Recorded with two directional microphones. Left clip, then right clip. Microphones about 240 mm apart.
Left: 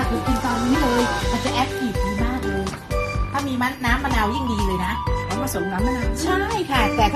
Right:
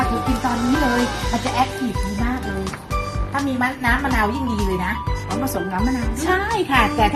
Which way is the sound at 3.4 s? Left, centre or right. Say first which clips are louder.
Right 3 dB; centre.